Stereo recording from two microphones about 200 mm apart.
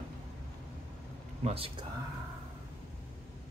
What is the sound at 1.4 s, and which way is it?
Speech, 30° right (ahead or behind).